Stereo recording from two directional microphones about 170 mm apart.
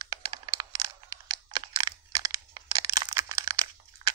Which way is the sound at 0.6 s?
20° right (ahead or behind).